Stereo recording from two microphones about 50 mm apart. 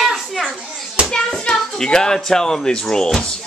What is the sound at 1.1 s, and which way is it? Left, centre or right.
A child's voice, centre.